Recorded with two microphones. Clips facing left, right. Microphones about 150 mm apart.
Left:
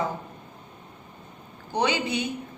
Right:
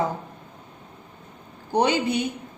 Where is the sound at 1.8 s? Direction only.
50° right (ahead or behind).